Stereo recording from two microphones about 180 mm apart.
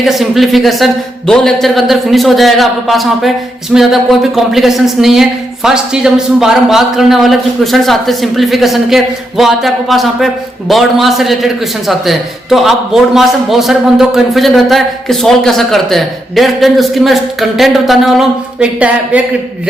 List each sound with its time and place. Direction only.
0.0 s a man's voice: centre (ahead or behind)